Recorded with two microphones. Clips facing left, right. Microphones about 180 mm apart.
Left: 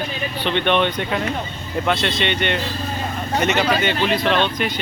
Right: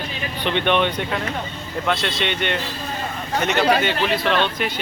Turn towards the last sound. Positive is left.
turn(degrees=-5)  # may be behind; listen again after turning